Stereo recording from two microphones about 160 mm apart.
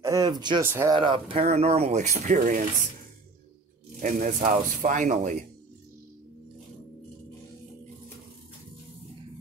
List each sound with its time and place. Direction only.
0.0 s a sound: 20° right (ahead or behind)
0.6 s speech: 15° right (ahead or behind)
0.9 s speech: 30° right (ahead or behind)
1.4 s speech: 45° right (ahead or behind)
4.0 s speech: 55° right (ahead or behind)